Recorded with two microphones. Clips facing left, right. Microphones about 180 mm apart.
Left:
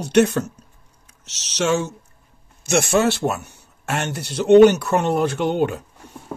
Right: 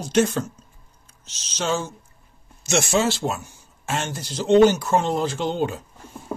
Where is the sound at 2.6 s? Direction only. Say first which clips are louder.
Left 3 dB; 60° left (ahead or behind).